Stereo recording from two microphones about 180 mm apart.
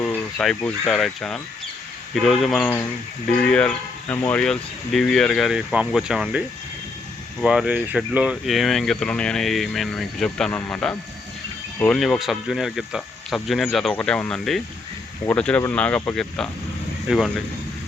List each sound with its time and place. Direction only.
0.0 s speech: 5° left (ahead or behind)
4.1 s speech: 10° left (ahead or behind)
7.4 s speech: 5° right (ahead or behind)